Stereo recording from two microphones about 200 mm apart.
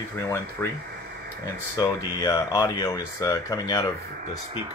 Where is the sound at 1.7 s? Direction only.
15° left (ahead or behind).